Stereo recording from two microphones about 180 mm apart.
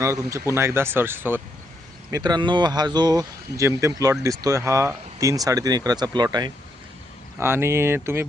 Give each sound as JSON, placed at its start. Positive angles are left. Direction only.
{"t": 0.0, "sound": "speech", "side_deg": -15}